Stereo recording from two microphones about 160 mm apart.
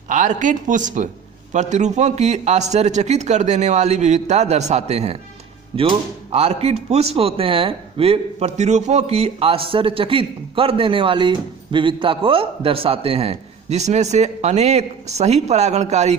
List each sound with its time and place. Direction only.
0.1 s a man's voice: 50° right (ahead or behind)